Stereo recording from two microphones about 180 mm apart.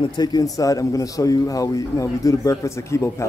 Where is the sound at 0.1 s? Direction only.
20° left (ahead or behind).